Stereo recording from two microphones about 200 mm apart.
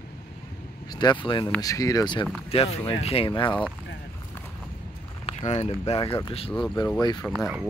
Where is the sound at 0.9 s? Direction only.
20° left (ahead or behind).